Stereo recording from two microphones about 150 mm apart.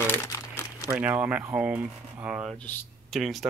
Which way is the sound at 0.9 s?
10° right (ahead or behind).